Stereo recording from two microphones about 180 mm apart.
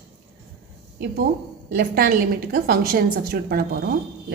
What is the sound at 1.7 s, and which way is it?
A woman's voice, 55° right (ahead or behind).